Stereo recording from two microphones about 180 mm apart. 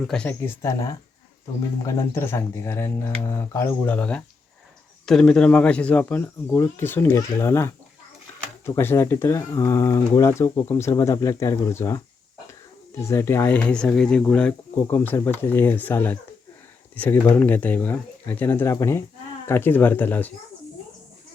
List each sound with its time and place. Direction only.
0.1 s speech: 5° left (ahead or behind)
2.0 s speech: 15° left (ahead or behind)